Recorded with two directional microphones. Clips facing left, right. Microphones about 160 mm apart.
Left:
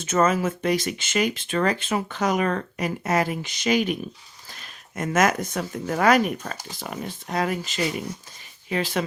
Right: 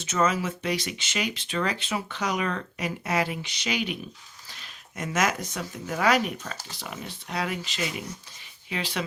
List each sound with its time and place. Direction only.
0.0 s speech: 50° left (ahead or behind)